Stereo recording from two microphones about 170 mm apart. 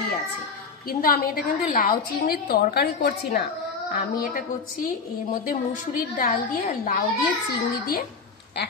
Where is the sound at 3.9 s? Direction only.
60° left (ahead or behind).